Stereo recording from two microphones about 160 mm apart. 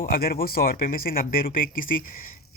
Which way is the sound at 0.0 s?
65° left (ahead or behind).